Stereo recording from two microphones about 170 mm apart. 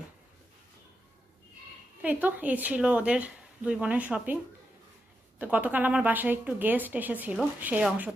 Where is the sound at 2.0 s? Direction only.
10° right (ahead or behind).